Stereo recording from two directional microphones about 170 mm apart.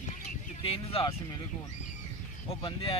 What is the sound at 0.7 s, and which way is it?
Speech, 35° left (ahead or behind).